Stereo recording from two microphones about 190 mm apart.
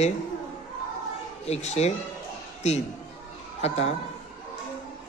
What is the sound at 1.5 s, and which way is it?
Speech, 35° left (ahead or behind).